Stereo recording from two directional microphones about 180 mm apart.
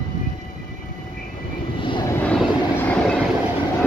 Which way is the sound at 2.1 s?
5° left (ahead or behind).